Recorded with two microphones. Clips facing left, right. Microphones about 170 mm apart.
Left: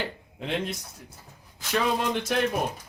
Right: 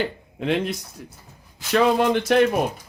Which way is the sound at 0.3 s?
70° right (ahead or behind).